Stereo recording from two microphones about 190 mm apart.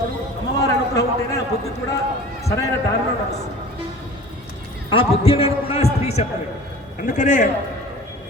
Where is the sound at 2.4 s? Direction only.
15° left (ahead or behind).